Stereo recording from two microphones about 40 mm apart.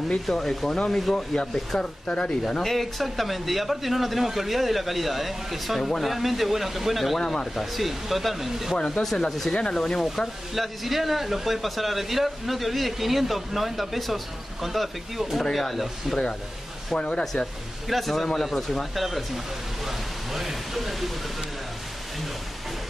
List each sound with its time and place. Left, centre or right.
0.3 s speech: centre
1.1 s speech: centre
2.4 s speech: centre
5.8 s speech: centre
6.0 s speech: centre
7.2 s speech: centre
7.5 s speech: centre
8.7 s speech: left
9.0 s speech: centre
9.5 s speech: centre
9.9 s speech: centre
16.9 s speech: left
17.8 s speech: centre